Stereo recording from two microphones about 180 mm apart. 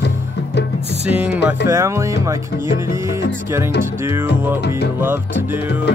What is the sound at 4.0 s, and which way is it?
Speech, 15° right (ahead or behind).